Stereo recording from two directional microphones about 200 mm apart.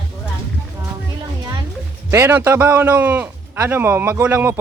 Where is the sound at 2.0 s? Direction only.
10° right (ahead or behind).